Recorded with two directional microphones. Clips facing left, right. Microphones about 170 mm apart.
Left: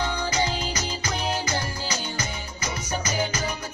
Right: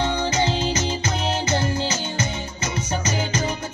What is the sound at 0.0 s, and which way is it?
Music, 25° right (ahead or behind).